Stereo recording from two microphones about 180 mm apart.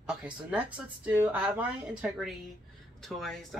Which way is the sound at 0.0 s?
5° right (ahead or behind).